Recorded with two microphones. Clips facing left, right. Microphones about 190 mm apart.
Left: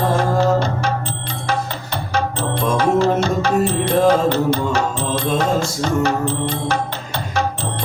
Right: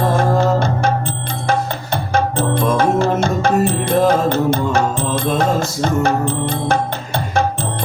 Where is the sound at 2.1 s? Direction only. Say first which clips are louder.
Right 4 dB; 50° right (ahead or behind).